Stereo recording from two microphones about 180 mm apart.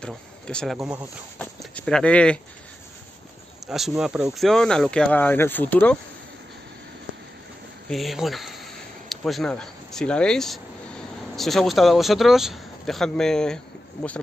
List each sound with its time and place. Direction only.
0.0 s speech: 5° left (ahead or behind)
0.7 s speech: 20° right (ahead or behind)
1.4 s speech: 5° left (ahead or behind)
3.6 s speech: centre (ahead or behind)
7.9 s speech: centre (ahead or behind)